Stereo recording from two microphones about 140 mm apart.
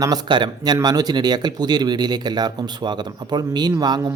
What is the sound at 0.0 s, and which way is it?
Speech, 30° right (ahead or behind).